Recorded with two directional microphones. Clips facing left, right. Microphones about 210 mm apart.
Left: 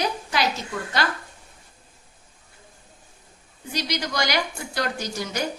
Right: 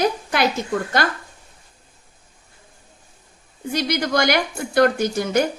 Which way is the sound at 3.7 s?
55° right (ahead or behind).